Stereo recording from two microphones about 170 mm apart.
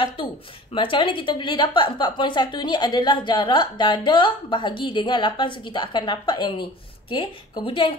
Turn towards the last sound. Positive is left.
turn(degrees=30)  # may be behind; listen again after turning